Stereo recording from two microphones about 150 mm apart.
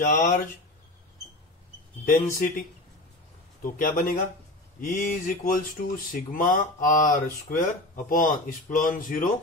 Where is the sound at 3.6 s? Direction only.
70° left (ahead or behind).